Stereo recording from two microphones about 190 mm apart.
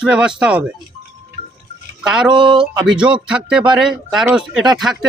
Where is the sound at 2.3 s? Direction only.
25° right (ahead or behind).